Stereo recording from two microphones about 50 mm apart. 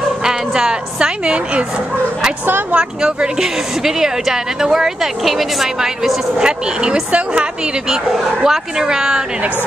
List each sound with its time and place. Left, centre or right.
0.2 s a woman's voice: centre
2.7 s a woman's voice: centre
6.3 s speech: centre
7.9 s a woman's voice: centre